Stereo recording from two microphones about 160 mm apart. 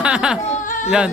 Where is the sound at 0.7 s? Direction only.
55° left (ahead or behind).